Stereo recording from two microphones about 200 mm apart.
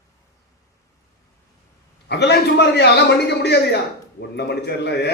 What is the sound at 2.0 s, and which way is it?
A man's voice, 55° left (ahead or behind).